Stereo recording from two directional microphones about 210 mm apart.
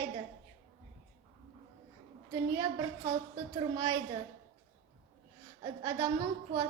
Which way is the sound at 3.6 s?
15° right (ahead or behind).